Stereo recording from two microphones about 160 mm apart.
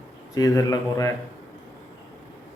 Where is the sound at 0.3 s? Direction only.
25° left (ahead or behind).